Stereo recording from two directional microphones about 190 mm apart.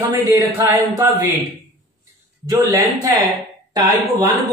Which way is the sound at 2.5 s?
15° right (ahead or behind).